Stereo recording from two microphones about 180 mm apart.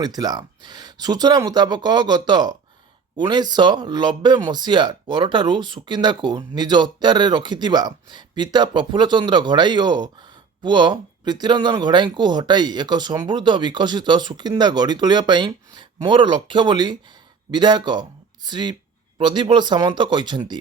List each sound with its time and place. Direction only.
0.0 s speech: 20° right (ahead or behind)